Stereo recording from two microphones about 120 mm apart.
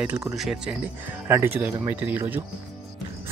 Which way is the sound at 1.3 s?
15° right (ahead or behind).